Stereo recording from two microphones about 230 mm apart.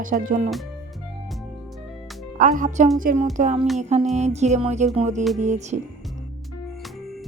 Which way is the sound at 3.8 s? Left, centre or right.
Right.